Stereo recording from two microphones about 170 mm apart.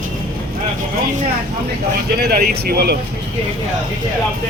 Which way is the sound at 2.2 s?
70° right (ahead or behind).